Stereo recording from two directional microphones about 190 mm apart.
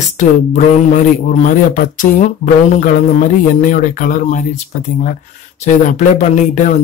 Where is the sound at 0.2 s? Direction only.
40° left (ahead or behind).